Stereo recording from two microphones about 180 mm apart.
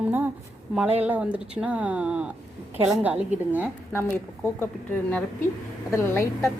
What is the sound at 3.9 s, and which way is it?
Speech, 10° left (ahead or behind).